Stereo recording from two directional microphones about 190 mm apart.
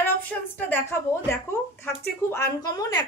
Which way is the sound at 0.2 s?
10° left (ahead or behind).